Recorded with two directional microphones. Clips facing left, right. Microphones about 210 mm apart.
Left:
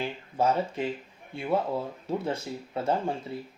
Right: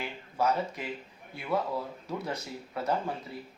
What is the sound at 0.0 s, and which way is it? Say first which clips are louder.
Speech: left 3 dB; 30° left (ahead or behind).